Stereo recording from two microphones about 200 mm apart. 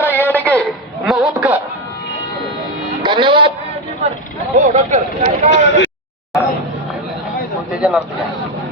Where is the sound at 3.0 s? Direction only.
25° right (ahead or behind).